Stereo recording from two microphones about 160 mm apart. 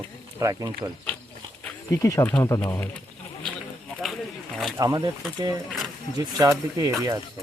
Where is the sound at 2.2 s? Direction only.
10° left (ahead or behind).